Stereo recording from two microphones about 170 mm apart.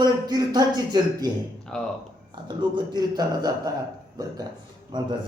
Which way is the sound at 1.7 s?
5° left (ahead or behind).